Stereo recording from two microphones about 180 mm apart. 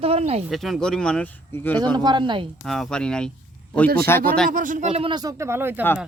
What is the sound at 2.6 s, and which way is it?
Speech, centre (ahead or behind).